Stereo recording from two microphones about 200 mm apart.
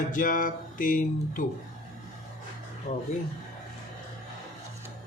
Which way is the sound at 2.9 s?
35° left (ahead or behind).